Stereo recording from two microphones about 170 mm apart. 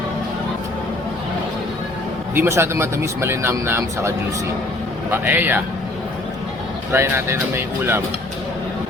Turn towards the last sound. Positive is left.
turn(degrees=-15)  # may be behind; listen again after turning